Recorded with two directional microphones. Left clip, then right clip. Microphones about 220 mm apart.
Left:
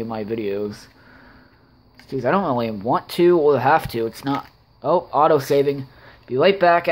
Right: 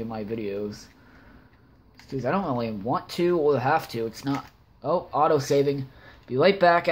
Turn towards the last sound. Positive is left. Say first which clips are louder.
# left 4 dB
turn(degrees=10)  # may be behind; listen again after turning